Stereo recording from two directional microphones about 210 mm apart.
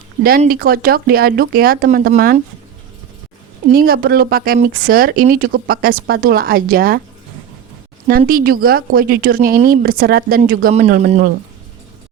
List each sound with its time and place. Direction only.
0.2 s speech: 45° right (ahead or behind)
3.7 s speech: 45° right (ahead or behind)
8.3 s speech: 45° right (ahead or behind)